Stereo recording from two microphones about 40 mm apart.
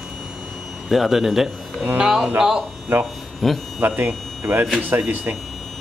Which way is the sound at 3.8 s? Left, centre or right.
Right.